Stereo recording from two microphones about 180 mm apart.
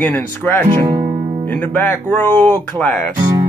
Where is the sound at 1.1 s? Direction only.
40° right (ahead or behind).